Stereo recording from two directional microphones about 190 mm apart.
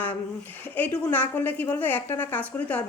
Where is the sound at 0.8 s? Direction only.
10° left (ahead or behind).